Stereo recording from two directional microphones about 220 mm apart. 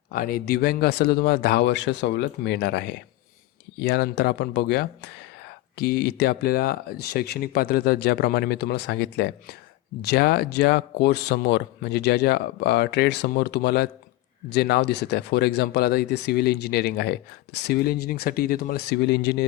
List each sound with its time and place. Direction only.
0.1 s speech: 40° left (ahead or behind)